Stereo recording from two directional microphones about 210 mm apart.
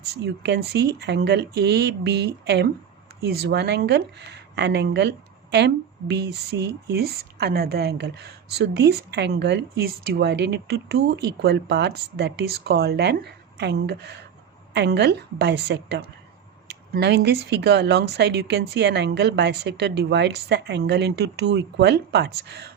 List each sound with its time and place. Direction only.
0.1 s a woman's voice: 50° right (ahead or behind)